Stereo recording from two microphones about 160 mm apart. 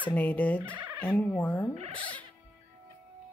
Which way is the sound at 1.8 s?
30° right (ahead or behind).